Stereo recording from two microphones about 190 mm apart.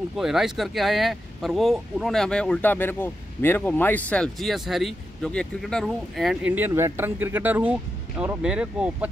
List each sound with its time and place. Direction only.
0.2 s speech: centre (ahead or behind)